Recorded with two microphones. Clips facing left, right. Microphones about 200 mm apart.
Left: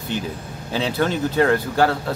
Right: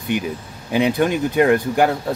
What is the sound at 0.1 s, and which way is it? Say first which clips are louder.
Speech: right 2 dB; 15° right (ahead or behind).